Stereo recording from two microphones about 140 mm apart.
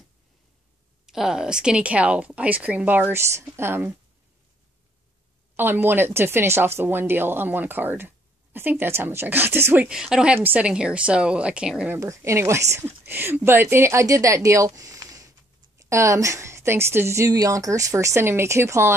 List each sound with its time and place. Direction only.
1.0 s a woman's voice: 5° right (ahead or behind)
5.6 s a woman's voice: 15° right (ahead or behind)
12.0 s a woman's voice: 20° right (ahead or behind)